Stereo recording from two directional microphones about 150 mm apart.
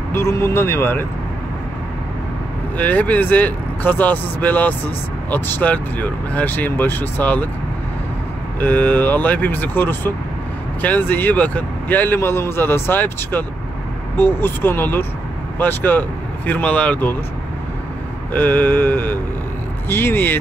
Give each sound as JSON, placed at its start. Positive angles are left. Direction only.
{"t": 0.1, "sound": "speech", "side_deg": 15}
{"t": 2.8, "sound": "speech", "side_deg": 10}
{"t": 8.5, "sound": "speech", "side_deg": 10}
{"t": 18.3, "sound": "speech", "side_deg": 10}